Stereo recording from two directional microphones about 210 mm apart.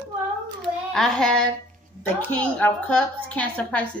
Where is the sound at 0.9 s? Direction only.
Centre (ahead or behind).